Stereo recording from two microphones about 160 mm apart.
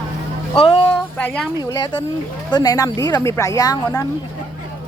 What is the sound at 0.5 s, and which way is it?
A woman's voice, 35° left (ahead or behind).